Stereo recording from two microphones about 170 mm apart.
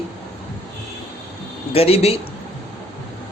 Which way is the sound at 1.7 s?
35° left (ahead or behind).